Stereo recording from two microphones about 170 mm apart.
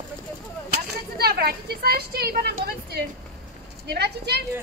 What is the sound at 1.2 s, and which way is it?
A woman's voice, 65° right (ahead or behind).